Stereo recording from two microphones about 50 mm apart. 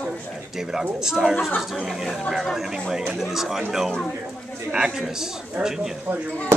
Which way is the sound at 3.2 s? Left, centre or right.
Centre.